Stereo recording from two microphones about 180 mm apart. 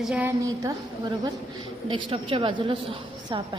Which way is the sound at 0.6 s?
20° right (ahead or behind).